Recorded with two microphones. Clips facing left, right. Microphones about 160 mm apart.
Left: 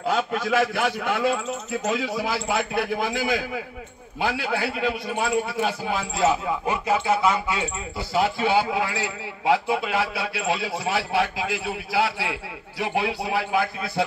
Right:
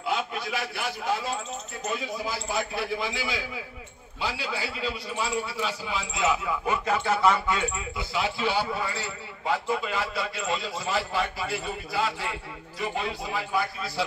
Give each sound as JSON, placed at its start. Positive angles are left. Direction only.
{"t": 0.0, "sound": "a sound", "side_deg": 45}
{"t": 0.5, "sound": "a man's voice", "side_deg": 50}
{"t": 1.9, "sound": "a man's voice", "side_deg": 85}
{"t": 6.7, "sound": "speech", "side_deg": 10}
{"t": 8.1, "sound": "a man's voice", "side_deg": 50}